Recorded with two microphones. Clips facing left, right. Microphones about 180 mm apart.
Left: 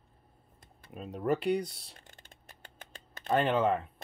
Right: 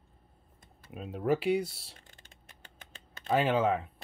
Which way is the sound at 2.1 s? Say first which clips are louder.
Left 2 dB; 45° left (ahead or behind).